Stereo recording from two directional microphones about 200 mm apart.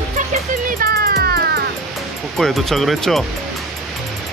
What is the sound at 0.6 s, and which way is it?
Music, 45° right (ahead or behind).